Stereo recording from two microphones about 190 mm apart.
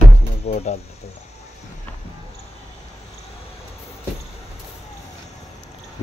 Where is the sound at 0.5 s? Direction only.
35° left (ahead or behind).